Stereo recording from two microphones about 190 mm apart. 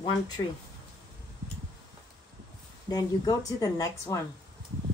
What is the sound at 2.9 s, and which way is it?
Speech, 20° left (ahead or behind).